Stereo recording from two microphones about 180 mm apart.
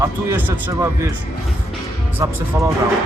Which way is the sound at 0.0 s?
15° right (ahead or behind).